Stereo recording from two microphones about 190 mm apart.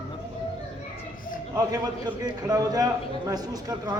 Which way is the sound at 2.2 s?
20° right (ahead or behind).